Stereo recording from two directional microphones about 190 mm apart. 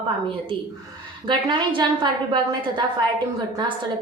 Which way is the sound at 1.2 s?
25° right (ahead or behind).